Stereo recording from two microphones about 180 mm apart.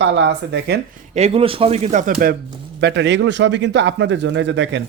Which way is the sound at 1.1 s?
35° right (ahead or behind).